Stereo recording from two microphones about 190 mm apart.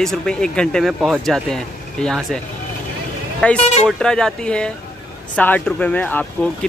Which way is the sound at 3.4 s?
5° left (ahead or behind).